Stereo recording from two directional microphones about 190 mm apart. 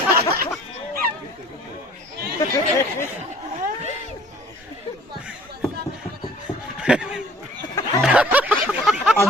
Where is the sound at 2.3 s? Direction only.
15° left (ahead or behind).